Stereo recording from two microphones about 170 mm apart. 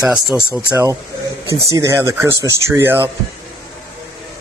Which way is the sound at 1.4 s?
15° right (ahead or behind).